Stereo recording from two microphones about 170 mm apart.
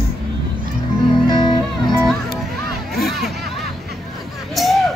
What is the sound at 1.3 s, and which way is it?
Music, 25° left (ahead or behind).